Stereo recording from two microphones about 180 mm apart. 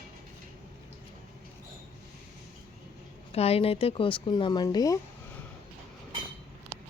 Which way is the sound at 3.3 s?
35° left (ahead or behind).